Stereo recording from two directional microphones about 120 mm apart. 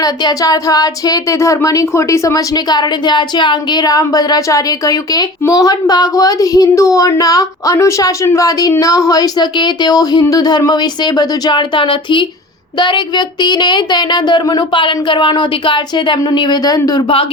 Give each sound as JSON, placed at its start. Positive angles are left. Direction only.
{"t": 0.0, "sound": "speech", "side_deg": 30}